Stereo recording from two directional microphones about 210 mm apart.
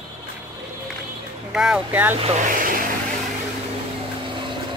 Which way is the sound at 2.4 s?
40° right (ahead or behind).